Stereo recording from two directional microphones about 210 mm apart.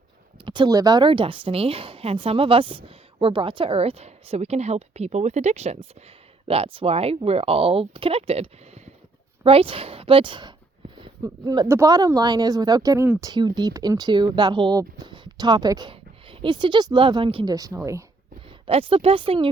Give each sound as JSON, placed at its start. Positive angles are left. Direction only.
{"t": 0.4, "sound": "speech", "side_deg": -20}